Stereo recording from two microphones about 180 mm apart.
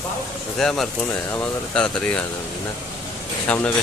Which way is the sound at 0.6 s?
Centre (ahead or behind).